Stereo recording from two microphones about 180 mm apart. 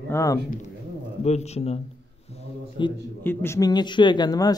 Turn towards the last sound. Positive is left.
turn(degrees=20)  # may be behind; listen again after turning